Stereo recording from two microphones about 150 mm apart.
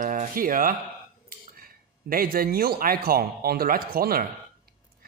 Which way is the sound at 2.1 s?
75° right (ahead or behind).